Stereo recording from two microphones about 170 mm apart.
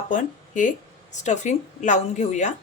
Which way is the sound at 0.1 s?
50° left (ahead or behind).